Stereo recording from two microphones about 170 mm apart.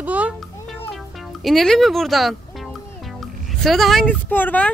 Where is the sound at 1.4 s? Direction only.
Centre (ahead or behind).